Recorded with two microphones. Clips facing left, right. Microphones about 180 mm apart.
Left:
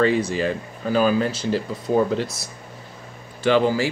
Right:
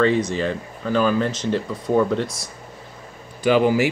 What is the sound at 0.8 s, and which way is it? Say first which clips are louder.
Speech: even; 40° left (ahead or behind).